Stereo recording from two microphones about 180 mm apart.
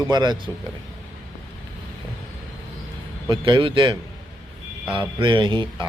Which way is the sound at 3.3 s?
25° right (ahead or behind).